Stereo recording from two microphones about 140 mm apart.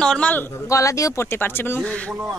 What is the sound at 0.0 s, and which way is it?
Speech, 5° left (ahead or behind).